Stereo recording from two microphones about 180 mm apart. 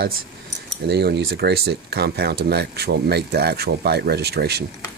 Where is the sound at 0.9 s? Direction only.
70° right (ahead or behind).